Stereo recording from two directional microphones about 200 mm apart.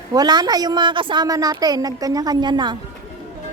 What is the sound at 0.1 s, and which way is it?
A woman's voice, 20° right (ahead or behind).